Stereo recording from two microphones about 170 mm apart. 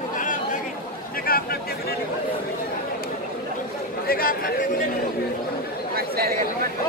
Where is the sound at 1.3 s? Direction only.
60° left (ahead or behind).